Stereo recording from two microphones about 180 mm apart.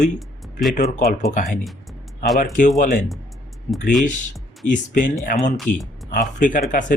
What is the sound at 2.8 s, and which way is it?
Speech, 45° left (ahead or behind).